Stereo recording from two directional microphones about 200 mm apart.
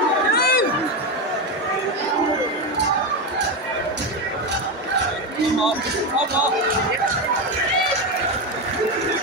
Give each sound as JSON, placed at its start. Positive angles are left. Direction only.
{"t": 0.3, "sound": "crowd", "side_deg": 50}